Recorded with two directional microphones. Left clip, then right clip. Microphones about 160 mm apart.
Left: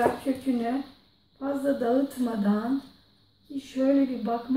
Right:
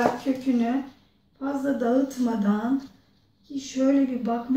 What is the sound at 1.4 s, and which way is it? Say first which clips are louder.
A woman's voice: even; 20° right (ahead or behind).